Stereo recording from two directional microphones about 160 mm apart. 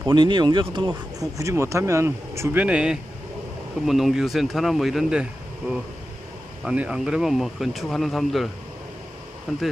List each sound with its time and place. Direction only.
0.1 s speech: 30° right (ahead or behind); by 5.2 s centre (ahead or behind)
6.7 s speech: 5° right (ahead or behind)